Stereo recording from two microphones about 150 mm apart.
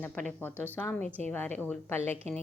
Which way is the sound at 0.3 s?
10° left (ahead or behind).